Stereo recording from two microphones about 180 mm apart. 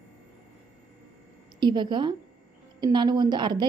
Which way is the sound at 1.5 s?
25° right (ahead or behind).